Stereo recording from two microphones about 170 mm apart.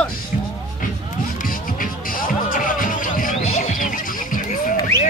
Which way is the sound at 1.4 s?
55° left (ahead or behind).